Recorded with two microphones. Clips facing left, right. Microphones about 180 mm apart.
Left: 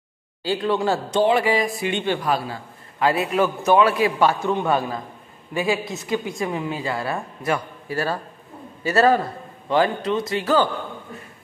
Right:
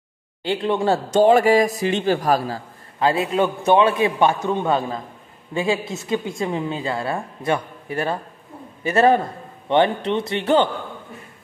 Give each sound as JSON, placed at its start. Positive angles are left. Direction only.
{"t": 0.4, "sound": "a man's voice", "side_deg": -25}
{"t": 1.1, "sound": "a man's voice", "side_deg": -45}